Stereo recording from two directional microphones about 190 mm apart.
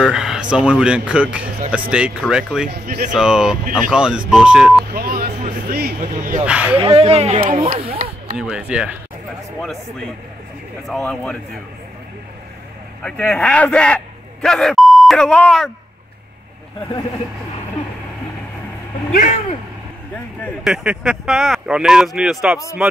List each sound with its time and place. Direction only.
0.0 s speech: 5° right (ahead or behind)
2.7 s speech: 55° right (ahead or behind)
3.1 s speech: 5° right (ahead or behind)
4.9 s vehicle: 50° right (ahead or behind)
5.9 s speech: 40° right (ahead or behind)
6.4 s speech: 5° right (ahead or behind)
6.8 s speech: 30° right (ahead or behind)
8.4 s speech: 5° right (ahead or behind)
13.0 s speech: 5° left (ahead or behind)
19.1 s speech: 40° left (ahead or behind)
20.6 s speech: 5° right (ahead or behind)